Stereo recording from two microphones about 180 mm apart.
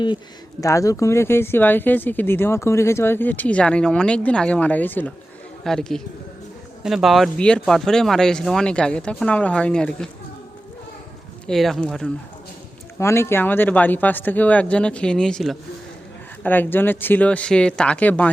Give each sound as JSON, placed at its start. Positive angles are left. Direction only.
{"t": 0.6, "sound": "speech", "side_deg": 20}
{"t": 11.4, "sound": "speech", "side_deg": 0}
{"t": 13.0, "sound": "speech", "side_deg": 15}